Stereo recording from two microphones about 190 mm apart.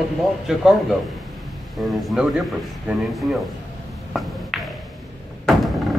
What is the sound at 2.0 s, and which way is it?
Speech, centre (ahead or behind).